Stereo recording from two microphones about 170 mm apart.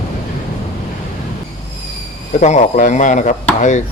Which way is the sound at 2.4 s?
45° left (ahead or behind).